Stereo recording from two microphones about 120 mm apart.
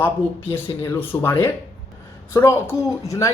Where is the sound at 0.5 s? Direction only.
20° left (ahead or behind).